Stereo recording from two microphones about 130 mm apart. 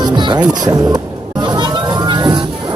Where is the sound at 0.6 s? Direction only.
30° right (ahead or behind).